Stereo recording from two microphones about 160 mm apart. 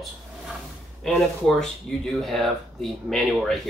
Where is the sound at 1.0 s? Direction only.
5° left (ahead or behind).